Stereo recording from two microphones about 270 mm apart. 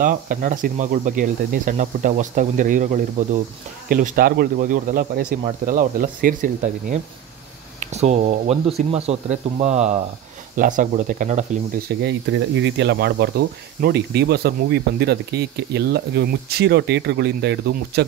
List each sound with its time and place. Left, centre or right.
0.0 s speech: right
12.0 s speech: right